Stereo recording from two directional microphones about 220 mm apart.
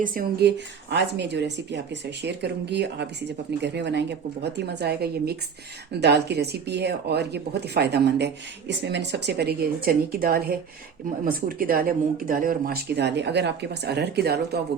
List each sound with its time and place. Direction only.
0.0 s speech: 40° right (ahead or behind)